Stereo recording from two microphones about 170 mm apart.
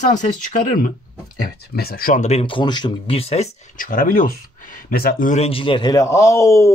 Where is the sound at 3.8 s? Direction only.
55° left (ahead or behind).